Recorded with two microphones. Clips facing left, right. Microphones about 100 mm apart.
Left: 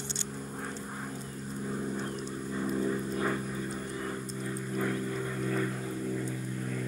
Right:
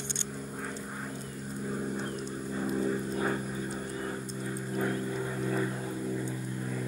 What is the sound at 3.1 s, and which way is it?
Vehicle, 25° right (ahead or behind).